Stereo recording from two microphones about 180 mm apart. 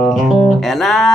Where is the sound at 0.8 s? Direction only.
Centre (ahead or behind).